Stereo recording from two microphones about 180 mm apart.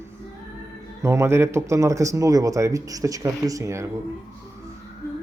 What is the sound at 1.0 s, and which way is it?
Speech, 15° right (ahead or behind).